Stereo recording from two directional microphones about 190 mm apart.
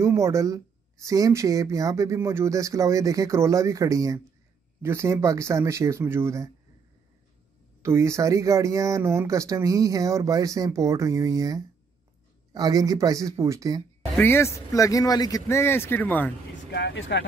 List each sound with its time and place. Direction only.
0.0 s speech: 15° right (ahead or behind)
7.8 s speech: 15° right (ahead or behind)
14.1 s speech: 10° left (ahead or behind)
16.7 s speech: 65° left (ahead or behind)